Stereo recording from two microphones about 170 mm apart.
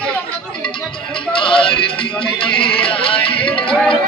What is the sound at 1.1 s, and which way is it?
Speech, 30° left (ahead or behind).